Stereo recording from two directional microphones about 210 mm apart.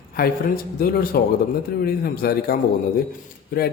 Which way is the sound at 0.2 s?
45° left (ahead or behind).